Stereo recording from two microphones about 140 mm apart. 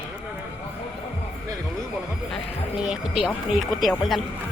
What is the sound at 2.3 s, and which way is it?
Speech, 5° right (ahead or behind).